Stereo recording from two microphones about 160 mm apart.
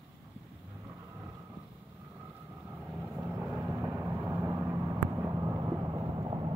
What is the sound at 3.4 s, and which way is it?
Vehicle, 20° right (ahead or behind).